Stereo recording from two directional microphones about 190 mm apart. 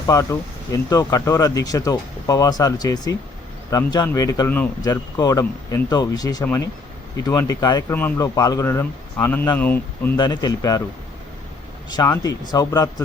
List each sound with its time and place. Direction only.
0.1 s a man's voice: 15° left (ahead or behind)
10.2 s speech: 20° left (ahead or behind)
11.9 s speech: 20° left (ahead or behind)